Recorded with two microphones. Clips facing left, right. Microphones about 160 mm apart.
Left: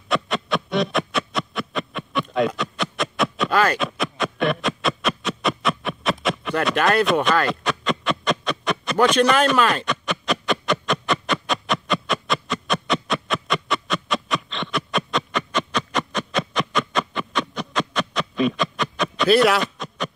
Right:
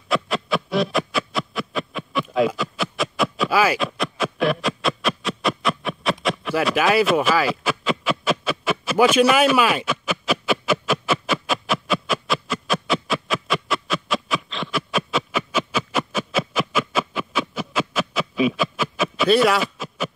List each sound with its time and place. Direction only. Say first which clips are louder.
0.1 s music: right 1 dB; centre (ahead or behind)